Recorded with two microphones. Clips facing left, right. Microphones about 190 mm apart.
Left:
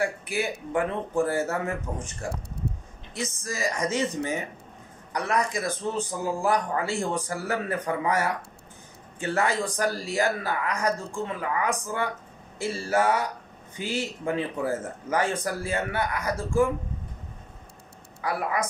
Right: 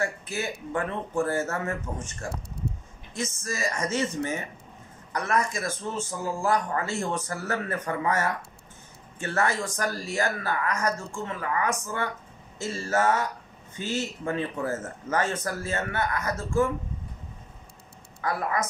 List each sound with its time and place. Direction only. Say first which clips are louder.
0.0 s speech: left 3 dB; 15° left (ahead or behind)
3.2 s speech: even; 15° left (ahead or behind)
18.2 s speech: even; 10° left (ahead or behind)